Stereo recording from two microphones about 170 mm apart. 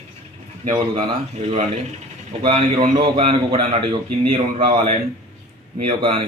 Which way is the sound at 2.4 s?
40° right (ahead or behind).